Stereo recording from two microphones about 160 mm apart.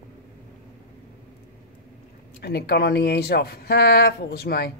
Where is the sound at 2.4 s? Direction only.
90° left.